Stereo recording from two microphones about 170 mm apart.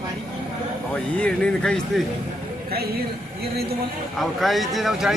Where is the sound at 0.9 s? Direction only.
5° left (ahead or behind).